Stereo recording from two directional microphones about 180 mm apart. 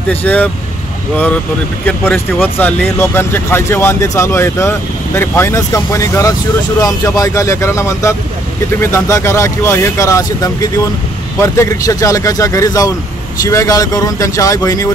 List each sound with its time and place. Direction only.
0.1 s speech: 10° left (ahead or behind)
1.9 s speech: 5° left (ahead or behind)